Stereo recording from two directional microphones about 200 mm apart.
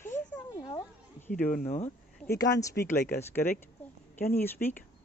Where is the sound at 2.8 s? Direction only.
50° left (ahead or behind).